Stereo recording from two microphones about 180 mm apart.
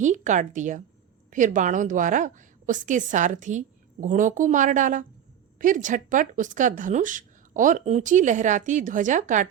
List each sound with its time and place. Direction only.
0.0 s speech: 40° right (ahead or behind)